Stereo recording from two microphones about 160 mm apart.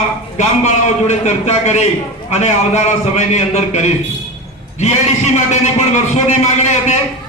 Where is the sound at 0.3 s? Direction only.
45° left (ahead or behind).